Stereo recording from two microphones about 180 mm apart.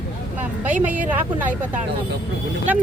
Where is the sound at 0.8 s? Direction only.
10° right (ahead or behind).